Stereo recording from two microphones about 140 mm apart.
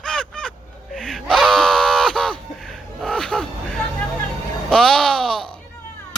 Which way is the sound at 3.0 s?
5° left (ahead or behind).